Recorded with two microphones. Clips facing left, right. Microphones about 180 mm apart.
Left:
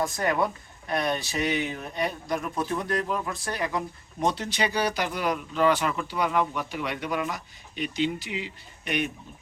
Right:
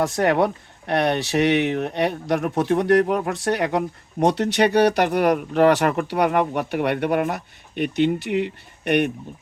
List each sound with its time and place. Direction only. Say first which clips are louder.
0.0 s speech: right 7 dB; 70° right (ahead or behind)